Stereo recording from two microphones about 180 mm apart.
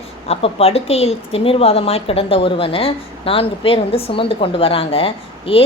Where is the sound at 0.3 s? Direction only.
35° left (ahead or behind).